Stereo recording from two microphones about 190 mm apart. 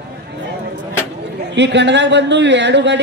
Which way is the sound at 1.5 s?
65° right (ahead or behind).